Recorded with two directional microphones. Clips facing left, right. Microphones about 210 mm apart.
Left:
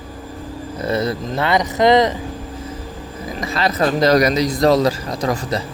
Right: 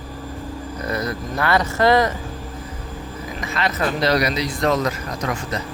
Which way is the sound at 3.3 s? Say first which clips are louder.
Left 4 dB; 35° left (ahead or behind).